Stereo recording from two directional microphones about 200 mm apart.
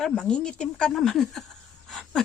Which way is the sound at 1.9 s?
Centre (ahead or behind).